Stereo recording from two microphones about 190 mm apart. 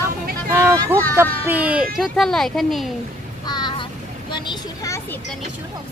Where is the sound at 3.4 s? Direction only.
20° left (ahead or behind).